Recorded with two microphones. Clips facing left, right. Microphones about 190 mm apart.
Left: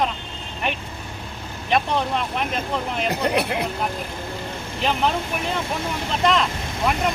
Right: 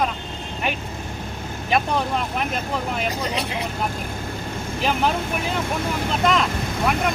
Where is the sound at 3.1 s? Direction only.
60° left (ahead or behind).